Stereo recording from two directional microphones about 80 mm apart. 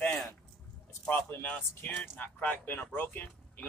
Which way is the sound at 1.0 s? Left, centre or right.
Centre.